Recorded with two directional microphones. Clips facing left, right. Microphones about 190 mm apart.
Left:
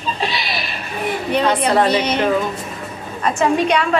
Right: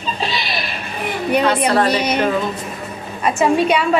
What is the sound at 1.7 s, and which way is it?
Speech, 20° left (ahead or behind).